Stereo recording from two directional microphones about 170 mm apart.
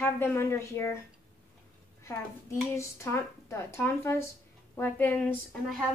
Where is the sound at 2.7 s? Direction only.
15° left (ahead or behind).